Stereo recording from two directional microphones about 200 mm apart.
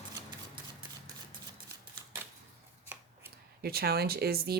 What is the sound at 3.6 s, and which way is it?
Speech, 50° right (ahead or behind).